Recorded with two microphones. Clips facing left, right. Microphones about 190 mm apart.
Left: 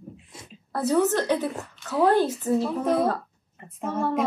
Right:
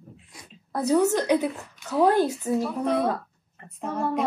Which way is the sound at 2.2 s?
Centre (ahead or behind).